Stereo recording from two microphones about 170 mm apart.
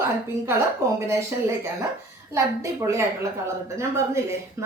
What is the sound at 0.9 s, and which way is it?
Speech, 15° right (ahead or behind).